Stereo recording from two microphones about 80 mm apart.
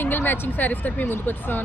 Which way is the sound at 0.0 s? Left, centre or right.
Left.